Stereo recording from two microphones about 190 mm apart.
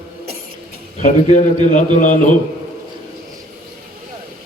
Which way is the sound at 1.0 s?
40° left (ahead or behind).